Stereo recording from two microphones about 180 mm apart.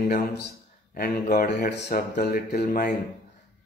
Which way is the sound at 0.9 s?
55° left (ahead or behind).